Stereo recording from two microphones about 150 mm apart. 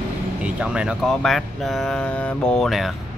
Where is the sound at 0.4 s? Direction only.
10° right (ahead or behind).